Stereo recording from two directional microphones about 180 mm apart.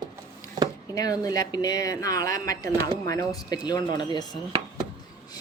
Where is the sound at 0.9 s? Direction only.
20° left (ahead or behind).